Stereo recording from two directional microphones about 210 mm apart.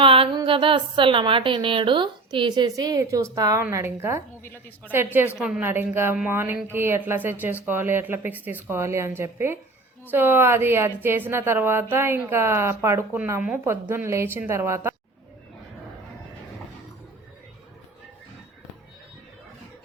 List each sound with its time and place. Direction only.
0.0 s a woman's voice: 25° right (ahead or behind)
4.4 s a woman's voice: 10° left (ahead or behind)
4.9 s a woman's voice: 10° right (ahead or behind)